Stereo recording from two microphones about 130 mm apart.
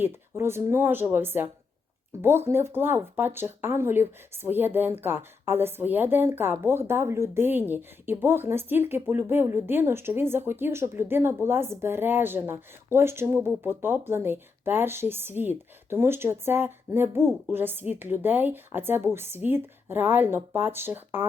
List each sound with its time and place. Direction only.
0.0 s speech: 20° right (ahead or behind)